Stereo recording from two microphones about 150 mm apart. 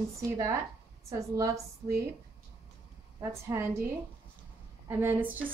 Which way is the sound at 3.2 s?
15° right (ahead or behind).